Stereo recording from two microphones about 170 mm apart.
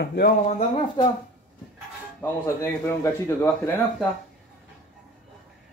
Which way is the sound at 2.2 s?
15° left (ahead or behind).